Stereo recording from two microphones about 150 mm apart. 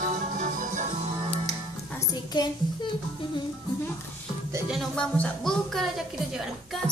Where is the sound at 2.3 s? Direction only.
30° left (ahead or behind).